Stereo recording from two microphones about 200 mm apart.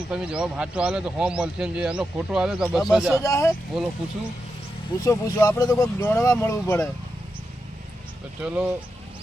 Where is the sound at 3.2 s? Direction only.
15° left (ahead or behind).